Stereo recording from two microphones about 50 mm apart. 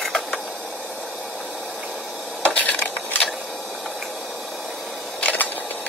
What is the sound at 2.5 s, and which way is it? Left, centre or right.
Wood, left.